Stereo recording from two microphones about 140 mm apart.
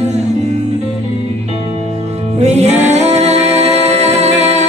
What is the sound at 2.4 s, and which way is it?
Music, 55° right (ahead or behind).